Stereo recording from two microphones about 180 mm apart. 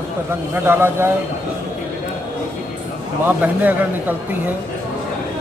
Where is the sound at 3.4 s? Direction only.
10° right (ahead or behind).